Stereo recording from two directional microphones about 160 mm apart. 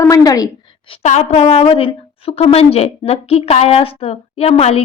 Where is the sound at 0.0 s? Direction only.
20° left (ahead or behind).